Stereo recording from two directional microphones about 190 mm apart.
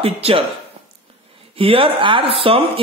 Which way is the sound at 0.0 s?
30° right (ahead or behind).